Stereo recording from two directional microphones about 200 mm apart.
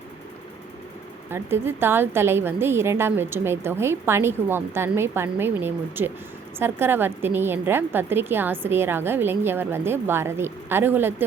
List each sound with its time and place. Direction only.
1.3 s a woman's voice: 10° right (ahead or behind)